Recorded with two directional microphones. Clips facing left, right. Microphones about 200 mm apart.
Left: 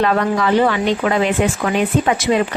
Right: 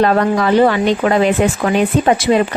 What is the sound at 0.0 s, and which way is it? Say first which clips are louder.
Speech: right 3 dB; 40° right (ahead or behind).